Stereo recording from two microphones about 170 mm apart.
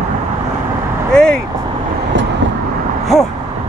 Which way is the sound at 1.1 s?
5° left (ahead or behind).